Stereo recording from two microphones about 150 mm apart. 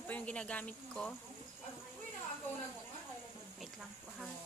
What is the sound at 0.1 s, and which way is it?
Speech, 10° left (ahead or behind).